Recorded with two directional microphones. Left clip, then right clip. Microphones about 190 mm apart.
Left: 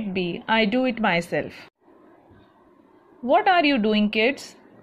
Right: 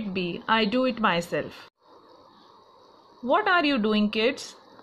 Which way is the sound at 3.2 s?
10° left (ahead or behind).